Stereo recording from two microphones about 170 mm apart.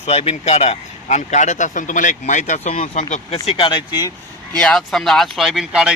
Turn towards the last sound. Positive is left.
turn(degrees=-5)  # may be behind; listen again after turning